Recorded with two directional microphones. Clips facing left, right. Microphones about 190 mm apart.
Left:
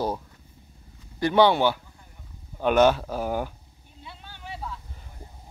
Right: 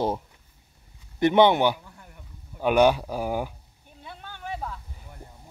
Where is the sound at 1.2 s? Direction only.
20° right (ahead or behind).